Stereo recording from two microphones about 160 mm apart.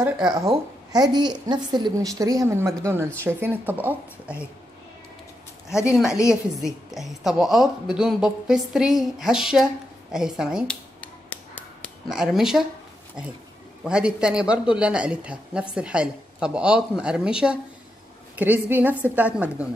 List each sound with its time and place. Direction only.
0.3 s a woman's voice: 20° right (ahead or behind)
5.9 s a woman's voice: 5° right (ahead or behind)
11.0 s a sound: 10° left (ahead or behind)
12.1 s a woman's voice: 5° right (ahead or behind)
13.8 s a woman's voice: 5° right (ahead or behind)